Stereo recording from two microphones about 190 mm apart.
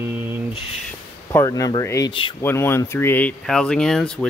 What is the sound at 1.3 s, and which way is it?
Speech, 15° left (ahead or behind).